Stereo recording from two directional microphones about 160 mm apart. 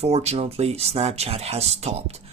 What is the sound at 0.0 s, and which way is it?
Speech, 40° right (ahead or behind).